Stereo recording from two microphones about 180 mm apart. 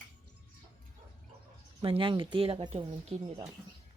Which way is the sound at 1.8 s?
30° right (ahead or behind).